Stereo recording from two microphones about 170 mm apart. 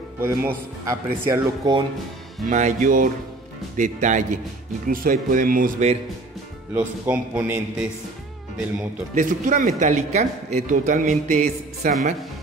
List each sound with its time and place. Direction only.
0.2 s speech: 10° right (ahead or behind)
2.4 s speech: 45° right (ahead or behind)
6.7 s speech: 10° right (ahead or behind)
9.1 s speech: 50° right (ahead or behind)